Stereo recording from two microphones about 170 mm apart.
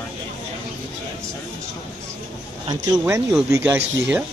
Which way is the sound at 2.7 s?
20° right (ahead or behind).